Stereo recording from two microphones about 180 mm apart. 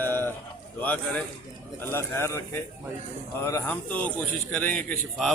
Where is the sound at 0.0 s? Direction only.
10° left (ahead or behind).